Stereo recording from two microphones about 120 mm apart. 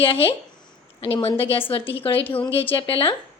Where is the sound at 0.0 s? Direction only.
50° left (ahead or behind).